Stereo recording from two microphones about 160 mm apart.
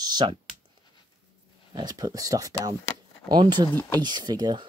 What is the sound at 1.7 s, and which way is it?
Speech, 25° right (ahead or behind).